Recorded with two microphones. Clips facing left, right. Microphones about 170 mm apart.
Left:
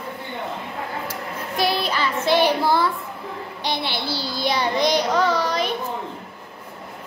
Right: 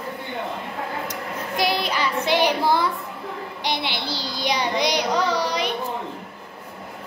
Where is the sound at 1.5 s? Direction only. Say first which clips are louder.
Left 1 dB; 15° right (ahead or behind).